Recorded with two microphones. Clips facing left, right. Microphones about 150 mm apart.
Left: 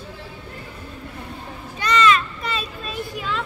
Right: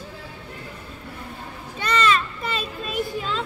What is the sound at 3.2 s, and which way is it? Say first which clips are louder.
Speech: even; 25° right (ahead or behind).